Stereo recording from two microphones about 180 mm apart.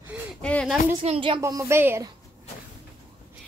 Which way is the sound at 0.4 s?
5° left (ahead or behind).